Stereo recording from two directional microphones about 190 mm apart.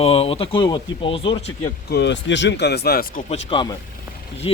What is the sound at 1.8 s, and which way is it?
Speech, 65° left (ahead or behind).